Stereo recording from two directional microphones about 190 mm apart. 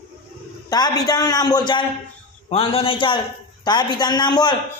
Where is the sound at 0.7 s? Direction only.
20° left (ahead or behind).